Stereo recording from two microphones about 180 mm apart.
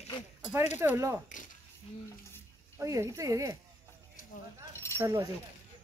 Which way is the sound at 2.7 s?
15° right (ahead or behind).